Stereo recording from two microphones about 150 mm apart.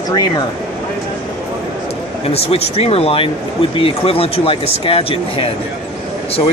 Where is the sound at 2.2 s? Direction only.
40° left (ahead or behind).